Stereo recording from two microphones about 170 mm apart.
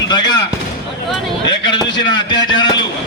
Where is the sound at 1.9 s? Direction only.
25° left (ahead or behind).